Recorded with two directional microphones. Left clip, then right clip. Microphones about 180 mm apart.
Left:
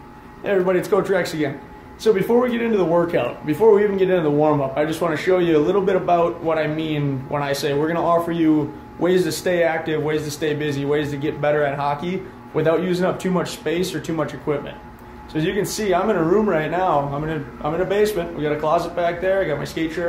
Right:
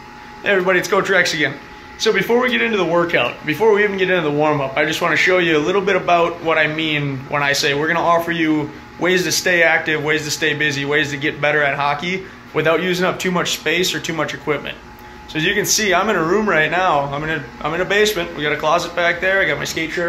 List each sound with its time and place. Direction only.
0.4 s speech: centre (ahead or behind)
19.8 s speech: 25° right (ahead or behind)